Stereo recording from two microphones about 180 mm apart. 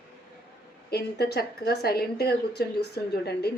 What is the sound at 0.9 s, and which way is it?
Speech, 65° left (ahead or behind).